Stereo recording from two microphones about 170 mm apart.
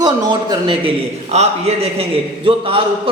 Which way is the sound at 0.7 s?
35° right (ahead or behind).